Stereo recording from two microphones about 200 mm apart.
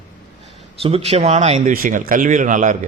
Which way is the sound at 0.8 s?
30° right (ahead or behind).